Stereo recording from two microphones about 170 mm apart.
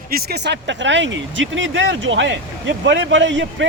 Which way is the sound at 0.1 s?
65° right (ahead or behind).